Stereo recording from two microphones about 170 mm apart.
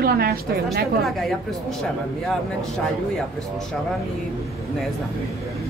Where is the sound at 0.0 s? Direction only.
65° right (ahead or behind).